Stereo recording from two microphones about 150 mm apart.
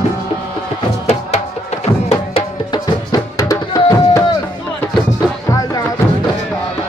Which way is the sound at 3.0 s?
25° left (ahead or behind).